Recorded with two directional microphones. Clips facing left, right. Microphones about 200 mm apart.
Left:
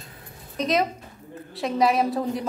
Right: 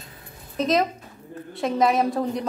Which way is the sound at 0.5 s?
Centre (ahead or behind).